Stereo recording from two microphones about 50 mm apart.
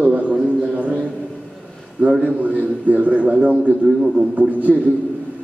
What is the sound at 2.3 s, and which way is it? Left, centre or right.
A man's voice, right.